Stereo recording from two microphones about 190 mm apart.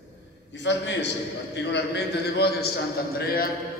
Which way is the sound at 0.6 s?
70° left (ahead or behind).